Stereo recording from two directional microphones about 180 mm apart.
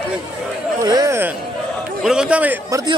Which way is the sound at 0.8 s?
20° right (ahead or behind).